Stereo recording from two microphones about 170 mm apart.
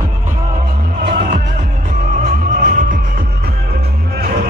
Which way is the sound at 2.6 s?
50° right (ahead or behind).